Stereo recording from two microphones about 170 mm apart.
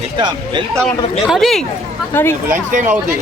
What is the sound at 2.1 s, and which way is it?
Speech, 15° left (ahead or behind).